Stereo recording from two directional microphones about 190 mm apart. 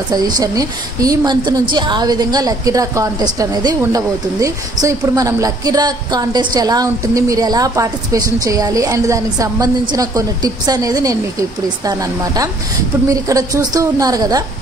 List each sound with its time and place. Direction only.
0.1 s a woman's voice: 20° right (ahead or behind)
13.1 s a woman's voice: 20° right (ahead or behind)